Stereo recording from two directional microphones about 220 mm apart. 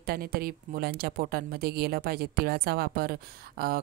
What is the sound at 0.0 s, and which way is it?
Speech, 40° right (ahead or behind).